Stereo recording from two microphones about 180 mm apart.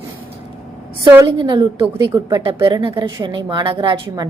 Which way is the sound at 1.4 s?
25° right (ahead or behind).